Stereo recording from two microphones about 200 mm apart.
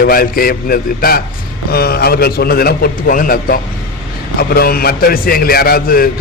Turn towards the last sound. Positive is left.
turn(degrees=45)  # may be behind; listen again after turning